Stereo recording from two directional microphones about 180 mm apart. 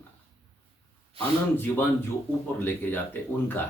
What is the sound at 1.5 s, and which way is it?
Speech, 10° left (ahead or behind).